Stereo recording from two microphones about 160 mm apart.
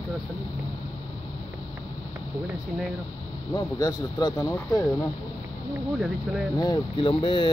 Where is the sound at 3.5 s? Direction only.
20° left (ahead or behind).